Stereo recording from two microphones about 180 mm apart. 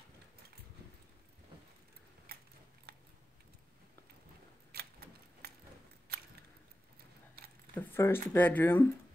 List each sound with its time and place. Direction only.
2.3 s biting: 60° right (ahead or behind)
4.7 s a sound: 60° right (ahead or behind)
7.8 s speech: 10° left (ahead or behind)